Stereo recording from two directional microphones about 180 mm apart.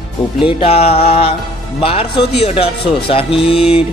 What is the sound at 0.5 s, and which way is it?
A man's voice, 35° left (ahead or behind).